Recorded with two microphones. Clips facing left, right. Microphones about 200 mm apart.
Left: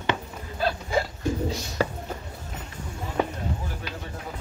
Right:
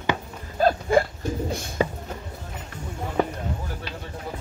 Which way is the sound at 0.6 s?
50° right (ahead or behind).